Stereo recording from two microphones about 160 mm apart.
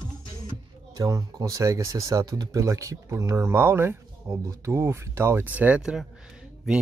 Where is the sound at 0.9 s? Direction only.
25° right (ahead or behind).